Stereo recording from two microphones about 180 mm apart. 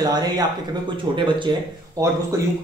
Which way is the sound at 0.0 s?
20° right (ahead or behind).